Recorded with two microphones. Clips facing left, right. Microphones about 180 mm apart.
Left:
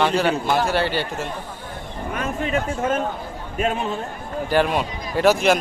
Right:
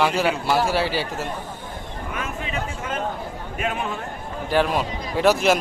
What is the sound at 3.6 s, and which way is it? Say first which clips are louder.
Speech: left 4 dB; 30° left (ahead or behind).